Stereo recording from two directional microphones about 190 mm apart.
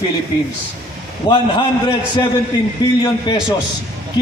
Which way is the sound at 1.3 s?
25° left (ahead or behind).